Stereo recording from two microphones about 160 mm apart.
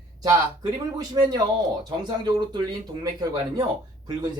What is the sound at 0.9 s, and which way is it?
Speech, 25° right (ahead or behind).